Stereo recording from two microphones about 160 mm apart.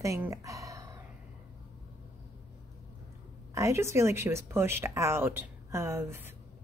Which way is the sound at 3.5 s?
20° right (ahead or behind).